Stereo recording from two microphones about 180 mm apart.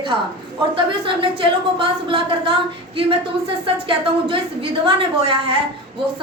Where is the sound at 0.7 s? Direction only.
30° right (ahead or behind).